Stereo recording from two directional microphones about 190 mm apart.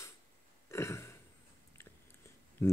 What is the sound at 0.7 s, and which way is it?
Burping, 15° left (ahead or behind).